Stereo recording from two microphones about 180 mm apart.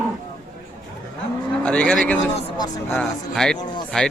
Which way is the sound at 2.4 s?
25° left (ahead or behind).